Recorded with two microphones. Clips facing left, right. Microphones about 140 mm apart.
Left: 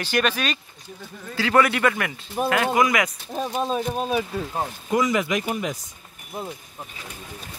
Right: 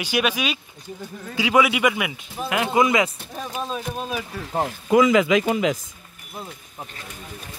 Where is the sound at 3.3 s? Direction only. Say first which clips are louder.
Left 5 dB; 35° left (ahead or behind).